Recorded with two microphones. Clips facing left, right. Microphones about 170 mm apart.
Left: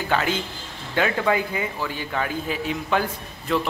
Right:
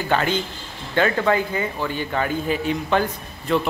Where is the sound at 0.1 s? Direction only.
5° left (ahead or behind).